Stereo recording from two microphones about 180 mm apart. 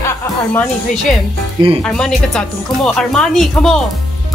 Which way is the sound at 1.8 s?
5° left (ahead or behind).